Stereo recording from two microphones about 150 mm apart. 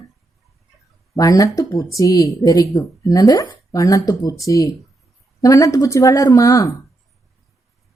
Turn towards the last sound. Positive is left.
turn(degrees=20)  # may be behind; listen again after turning